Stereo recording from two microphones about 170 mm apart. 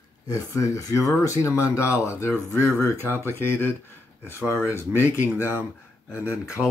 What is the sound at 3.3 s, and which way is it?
Speech, 10° left (ahead or behind).